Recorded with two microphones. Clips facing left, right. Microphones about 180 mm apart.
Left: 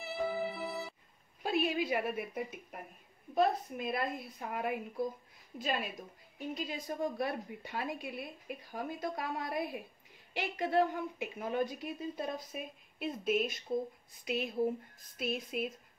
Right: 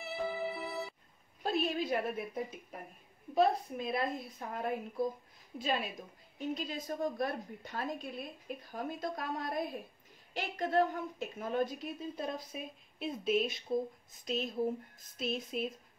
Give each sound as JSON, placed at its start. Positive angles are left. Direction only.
{"t": 0.0, "sound": "music", "side_deg": 0}
{"t": 1.4, "sound": "a woman's voice", "side_deg": 5}
{"t": 8.0, "sound": "speech", "side_deg": 60}
{"t": 8.5, "sound": "a woman's voice", "side_deg": 5}
{"t": 15.1, "sound": "a woman's voice", "side_deg": 5}